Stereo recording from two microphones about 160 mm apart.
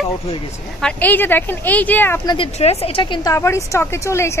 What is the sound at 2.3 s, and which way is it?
Speech, 35° left (ahead or behind).